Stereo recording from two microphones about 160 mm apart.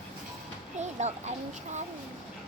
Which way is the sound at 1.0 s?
45° right (ahead or behind).